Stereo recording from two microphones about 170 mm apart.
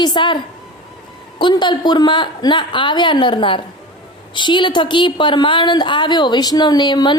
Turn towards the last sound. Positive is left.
turn(degrees=25)  # may be behind; listen again after turning